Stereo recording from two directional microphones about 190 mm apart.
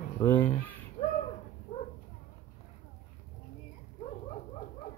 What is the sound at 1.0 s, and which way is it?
Bird, 40° left (ahead or behind).